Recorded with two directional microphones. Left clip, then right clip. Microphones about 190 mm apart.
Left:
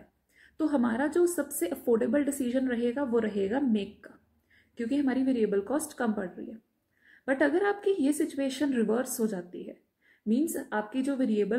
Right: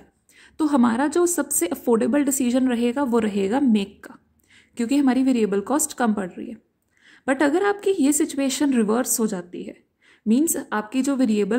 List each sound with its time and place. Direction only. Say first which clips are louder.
0.4 s a woman's voice: right 8 dB; 45° right (ahead or behind)